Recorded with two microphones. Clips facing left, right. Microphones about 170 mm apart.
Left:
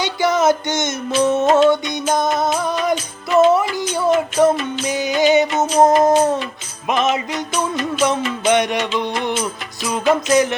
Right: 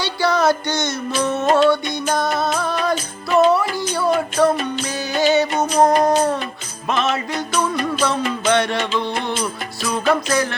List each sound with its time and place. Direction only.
0.0 s music: 20° left (ahead or behind)